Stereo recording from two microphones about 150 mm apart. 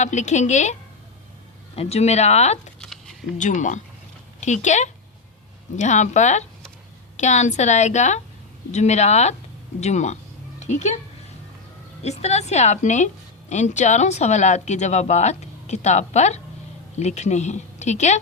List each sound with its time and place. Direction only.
0.0 s speech: 50° left (ahead or behind)
2.8 s a sound: 5° left (ahead or behind)
3.3 s speech: 55° left (ahead or behind)
12.0 s speech: 45° left (ahead or behind)